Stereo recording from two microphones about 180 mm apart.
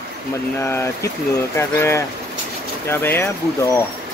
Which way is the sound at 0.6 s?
15° left (ahead or behind).